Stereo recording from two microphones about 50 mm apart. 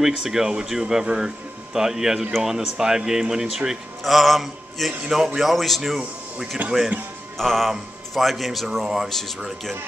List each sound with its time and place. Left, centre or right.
0.0 s speech: centre
4.0 s mantra: centre
5.1 s speech: centre
6.6 s speech: right
7.3 s speech: centre